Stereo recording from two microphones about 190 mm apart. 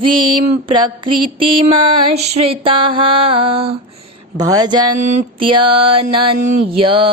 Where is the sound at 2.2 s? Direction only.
35° right (ahead or behind).